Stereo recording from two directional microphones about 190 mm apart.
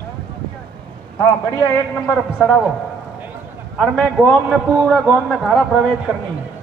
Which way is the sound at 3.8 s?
5° left (ahead or behind).